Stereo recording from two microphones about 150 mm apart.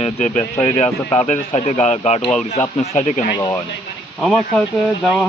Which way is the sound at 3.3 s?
25° left (ahead or behind).